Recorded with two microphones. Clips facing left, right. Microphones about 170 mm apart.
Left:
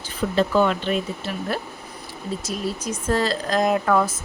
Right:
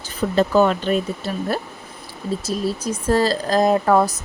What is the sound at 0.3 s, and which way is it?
Speech, 40° right (ahead or behind).